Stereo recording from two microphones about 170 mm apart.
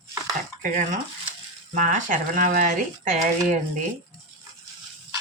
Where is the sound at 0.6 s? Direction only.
50° right (ahead or behind).